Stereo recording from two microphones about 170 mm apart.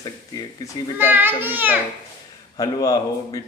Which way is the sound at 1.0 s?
10° right (ahead or behind).